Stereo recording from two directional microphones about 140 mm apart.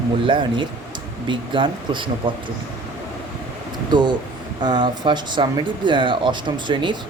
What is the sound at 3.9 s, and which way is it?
Speech, 30° right (ahead or behind).